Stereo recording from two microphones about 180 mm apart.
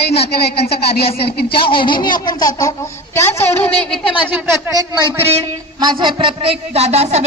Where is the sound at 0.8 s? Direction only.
60° left (ahead or behind).